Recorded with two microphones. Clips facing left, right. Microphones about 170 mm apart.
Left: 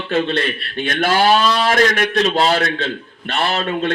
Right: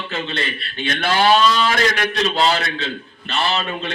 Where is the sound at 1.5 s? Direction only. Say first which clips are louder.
Left 1 dB; 60° left (ahead or behind).